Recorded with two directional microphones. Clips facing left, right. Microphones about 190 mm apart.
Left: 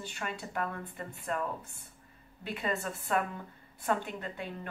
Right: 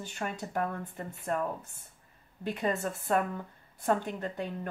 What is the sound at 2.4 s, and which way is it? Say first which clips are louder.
Speech: right 4 dB; 45° right (ahead or behind).